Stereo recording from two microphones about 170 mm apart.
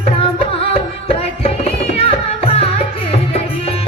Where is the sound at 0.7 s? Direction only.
35° left (ahead or behind).